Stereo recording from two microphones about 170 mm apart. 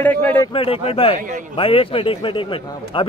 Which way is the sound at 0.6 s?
35° left (ahead or behind).